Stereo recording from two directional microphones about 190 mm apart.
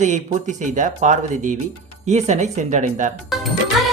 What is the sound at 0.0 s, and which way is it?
Speech, 40° right (ahead or behind).